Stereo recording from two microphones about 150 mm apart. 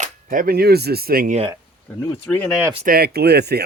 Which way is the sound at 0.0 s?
65° right (ahead or behind).